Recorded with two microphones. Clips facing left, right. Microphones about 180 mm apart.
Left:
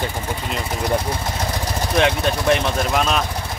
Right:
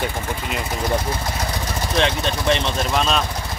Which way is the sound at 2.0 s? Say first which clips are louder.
Left 2 dB; 10° left (ahead or behind).